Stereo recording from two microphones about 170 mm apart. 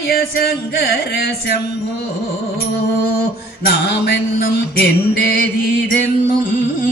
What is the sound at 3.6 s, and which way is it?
Mantra, 75° left (ahead or behind).